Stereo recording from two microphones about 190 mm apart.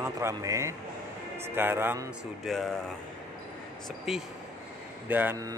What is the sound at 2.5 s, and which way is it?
Speech, centre (ahead or behind).